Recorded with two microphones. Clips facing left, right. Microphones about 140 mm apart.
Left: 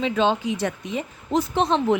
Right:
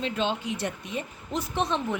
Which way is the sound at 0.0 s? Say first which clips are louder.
Left 7 dB; 90° left.